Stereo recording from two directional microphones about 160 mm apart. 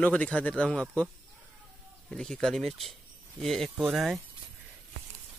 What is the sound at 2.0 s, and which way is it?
Speech, 5° left (ahead or behind).